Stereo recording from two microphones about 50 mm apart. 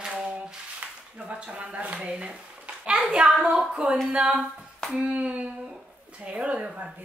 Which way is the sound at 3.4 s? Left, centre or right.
Centre.